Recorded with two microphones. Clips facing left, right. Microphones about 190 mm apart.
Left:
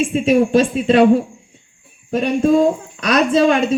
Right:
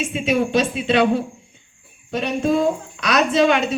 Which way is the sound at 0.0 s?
45° left (ahead or behind).